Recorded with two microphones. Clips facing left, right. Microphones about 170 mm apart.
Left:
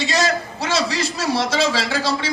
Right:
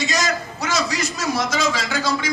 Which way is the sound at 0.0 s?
30° left (ahead or behind).